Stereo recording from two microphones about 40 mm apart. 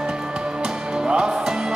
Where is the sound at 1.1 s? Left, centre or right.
Right.